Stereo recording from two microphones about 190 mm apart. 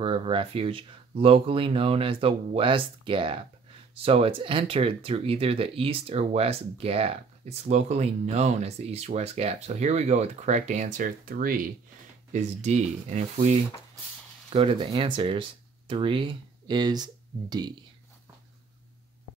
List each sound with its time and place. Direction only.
0.0 s speech: 30° right (ahead or behind)